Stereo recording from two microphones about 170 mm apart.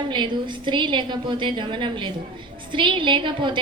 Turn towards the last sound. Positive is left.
turn(degrees=-30)  # may be behind; listen again after turning